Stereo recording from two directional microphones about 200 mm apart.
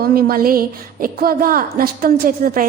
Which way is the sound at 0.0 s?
50° right (ahead or behind).